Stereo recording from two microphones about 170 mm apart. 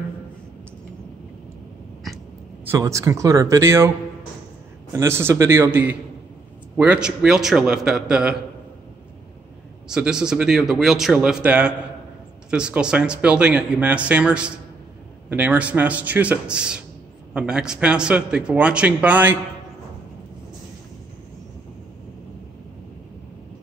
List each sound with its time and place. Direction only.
2.6 s a man's voice: 15° right (ahead or behind)
4.9 s a man's voice: 15° right (ahead or behind)
9.8 s a man's voice: 5° right (ahead or behind)